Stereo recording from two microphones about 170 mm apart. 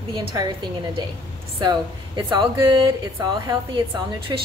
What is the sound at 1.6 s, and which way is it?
Speech, 25° right (ahead or behind).